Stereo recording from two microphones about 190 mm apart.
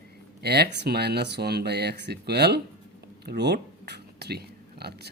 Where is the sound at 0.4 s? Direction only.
60° right (ahead or behind).